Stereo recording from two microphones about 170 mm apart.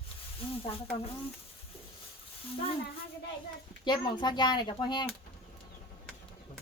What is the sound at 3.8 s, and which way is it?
Speech, 25° left (ahead or behind).